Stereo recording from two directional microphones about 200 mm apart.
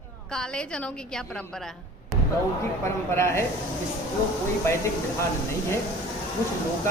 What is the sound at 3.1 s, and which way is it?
Speech, 15° left (ahead or behind).